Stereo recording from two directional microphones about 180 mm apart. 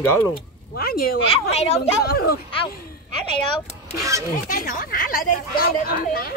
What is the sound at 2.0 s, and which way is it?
Speech, 60° left (ahead or behind).